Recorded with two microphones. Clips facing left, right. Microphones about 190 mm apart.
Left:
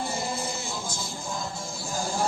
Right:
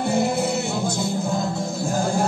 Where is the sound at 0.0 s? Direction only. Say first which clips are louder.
Right 10 dB; 60° right (ahead or behind).